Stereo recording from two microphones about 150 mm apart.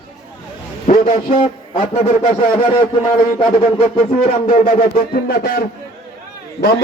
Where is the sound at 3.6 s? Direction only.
45° left (ahead or behind).